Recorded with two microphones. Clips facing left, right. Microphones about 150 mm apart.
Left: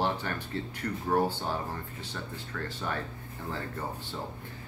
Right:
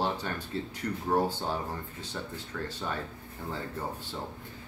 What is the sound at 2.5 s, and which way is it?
Speech, 15° right (ahead or behind).